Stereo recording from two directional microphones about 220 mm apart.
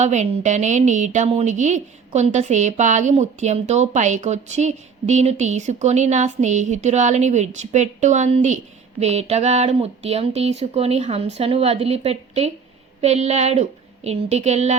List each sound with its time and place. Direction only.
0.0 s a woman's voice: 30° right (ahead or behind)